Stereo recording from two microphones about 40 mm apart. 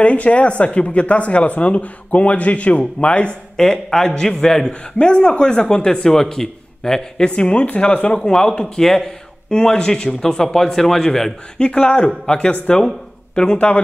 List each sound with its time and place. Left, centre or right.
0.0 s speech: left
3.5 s a man's voice: centre
4.9 s a man's voice: left
7.2 s speech: left
8.2 s a man's voice: centre
11.5 s speech: left